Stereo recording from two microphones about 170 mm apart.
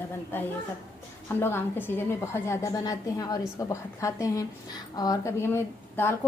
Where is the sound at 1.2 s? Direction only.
15° left (ahead or behind).